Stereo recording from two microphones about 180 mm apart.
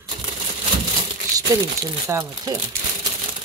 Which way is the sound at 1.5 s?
20° right (ahead or behind).